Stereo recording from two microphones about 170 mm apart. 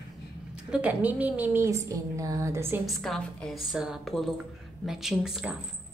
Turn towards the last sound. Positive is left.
turn(degrees=-5)  # may be behind; listen again after turning